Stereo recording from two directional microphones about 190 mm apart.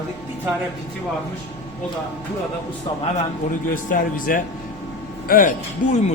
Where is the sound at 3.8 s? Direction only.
45° left (ahead or behind).